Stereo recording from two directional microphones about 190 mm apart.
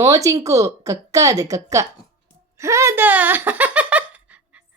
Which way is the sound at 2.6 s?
15° right (ahead or behind).